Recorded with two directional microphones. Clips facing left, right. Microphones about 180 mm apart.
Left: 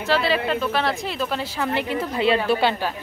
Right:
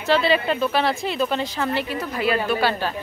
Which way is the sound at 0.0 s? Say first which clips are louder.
Right 2 dB; centre (ahead or behind).